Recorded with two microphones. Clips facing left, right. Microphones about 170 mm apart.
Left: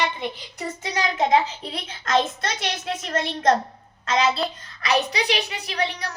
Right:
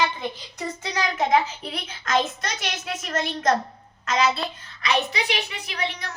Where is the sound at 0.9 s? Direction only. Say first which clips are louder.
Left 1 dB; 25° left (ahead or behind).